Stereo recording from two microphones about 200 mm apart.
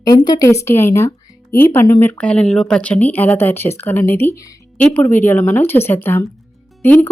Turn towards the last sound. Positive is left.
turn(degrees=10)  # may be behind; listen again after turning